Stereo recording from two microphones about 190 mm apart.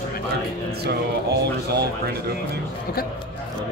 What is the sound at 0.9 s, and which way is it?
Speech, 60° right (ahead or behind).